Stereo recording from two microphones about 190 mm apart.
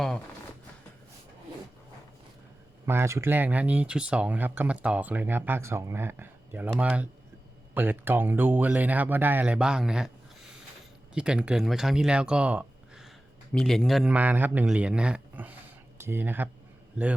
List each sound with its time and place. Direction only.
2.8 s speech: 15° right (ahead or behind)
11.1 s a man's voice: 5° right (ahead or behind)